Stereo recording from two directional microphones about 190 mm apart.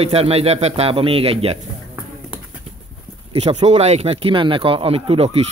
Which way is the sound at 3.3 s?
35° right (ahead or behind).